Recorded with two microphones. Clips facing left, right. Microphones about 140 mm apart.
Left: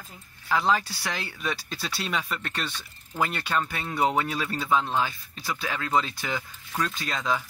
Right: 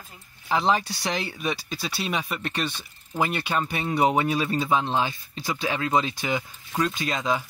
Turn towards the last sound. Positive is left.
turn(degrees=-15)  # may be behind; listen again after turning